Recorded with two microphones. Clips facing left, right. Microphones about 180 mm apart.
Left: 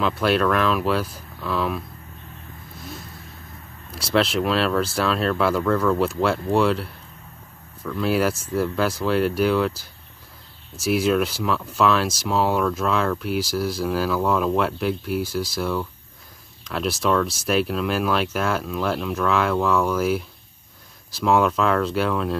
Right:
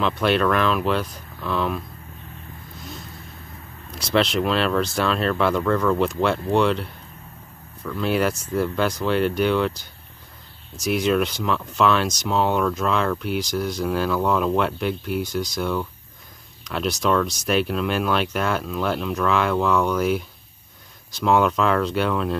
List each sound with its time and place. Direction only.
0.0 s speech: centre (ahead or behind)
3.9 s speech: 5° left (ahead or behind)